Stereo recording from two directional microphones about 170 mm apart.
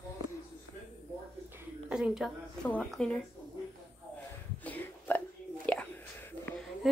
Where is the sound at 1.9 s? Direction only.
5° right (ahead or behind).